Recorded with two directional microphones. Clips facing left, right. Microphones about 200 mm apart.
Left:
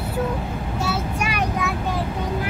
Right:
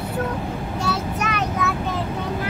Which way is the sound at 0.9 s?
10° left (ahead or behind).